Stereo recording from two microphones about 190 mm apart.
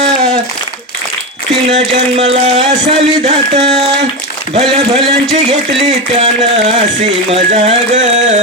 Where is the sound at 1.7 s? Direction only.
35° right (ahead or behind).